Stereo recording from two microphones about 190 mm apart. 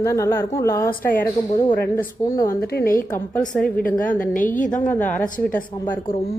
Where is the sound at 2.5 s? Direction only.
55° left (ahead or behind).